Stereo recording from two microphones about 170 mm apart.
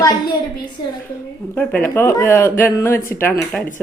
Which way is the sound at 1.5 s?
10° left (ahead or behind).